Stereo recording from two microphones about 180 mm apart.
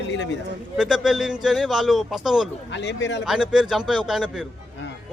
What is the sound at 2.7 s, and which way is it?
Speech, 80° left.